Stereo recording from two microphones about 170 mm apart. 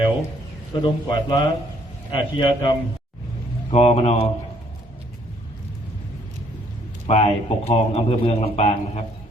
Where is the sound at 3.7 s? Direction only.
40° left (ahead or behind).